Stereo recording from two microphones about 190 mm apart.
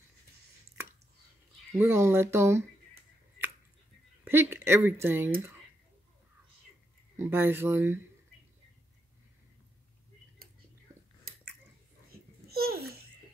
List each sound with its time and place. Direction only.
0.8 s a sound: 15° right (ahead or behind)
1.8 s speech: 15° right (ahead or behind)
4.2 s speech: 10° right (ahead or behind)
7.2 s speech: 10° right (ahead or behind)
12.4 s babbling: 55° right (ahead or behind)